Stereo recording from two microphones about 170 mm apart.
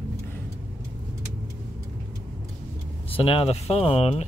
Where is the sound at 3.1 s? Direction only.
35° left (ahead or behind).